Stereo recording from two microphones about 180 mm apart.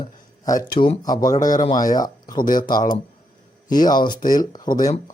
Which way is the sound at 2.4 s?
50° left (ahead or behind).